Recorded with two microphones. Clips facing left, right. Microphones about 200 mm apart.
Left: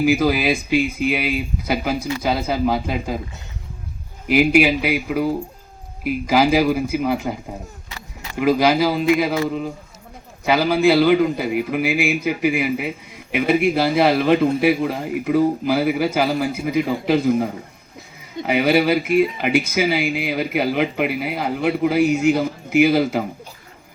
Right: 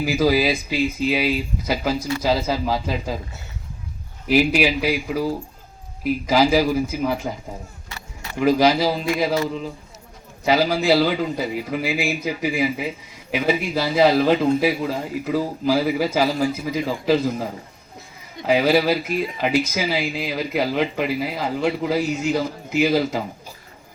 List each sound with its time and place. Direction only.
0.0 s speech: 60° left (ahead or behind)
4.3 s speech: 60° left (ahead or behind)
8.4 s speech: 55° left (ahead or behind)